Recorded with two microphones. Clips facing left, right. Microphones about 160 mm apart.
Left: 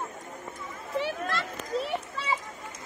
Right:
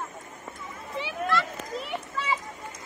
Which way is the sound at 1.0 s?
50° left (ahead or behind).